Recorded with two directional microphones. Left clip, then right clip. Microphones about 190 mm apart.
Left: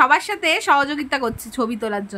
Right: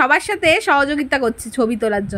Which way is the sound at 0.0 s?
15° right (ahead or behind).